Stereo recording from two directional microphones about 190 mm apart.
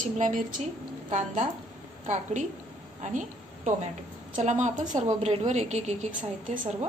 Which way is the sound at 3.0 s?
40° right (ahead or behind).